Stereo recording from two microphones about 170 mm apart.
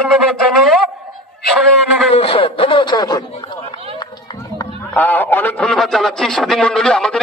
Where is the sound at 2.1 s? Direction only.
35° left (ahead or behind).